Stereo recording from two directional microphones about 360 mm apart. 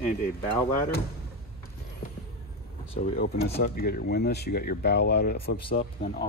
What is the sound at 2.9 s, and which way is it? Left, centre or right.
Speech, centre.